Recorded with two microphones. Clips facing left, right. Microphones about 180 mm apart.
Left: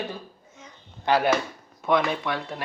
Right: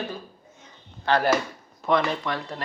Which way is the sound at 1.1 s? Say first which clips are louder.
Left 1 dB; 15° left (ahead or behind).